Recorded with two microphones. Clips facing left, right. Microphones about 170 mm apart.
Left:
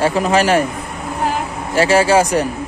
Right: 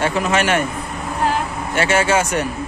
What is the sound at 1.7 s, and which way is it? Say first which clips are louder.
Speech: left 5 dB; 35° left (ahead or behind).